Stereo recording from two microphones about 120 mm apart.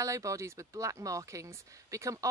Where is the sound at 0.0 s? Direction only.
25° right (ahead or behind).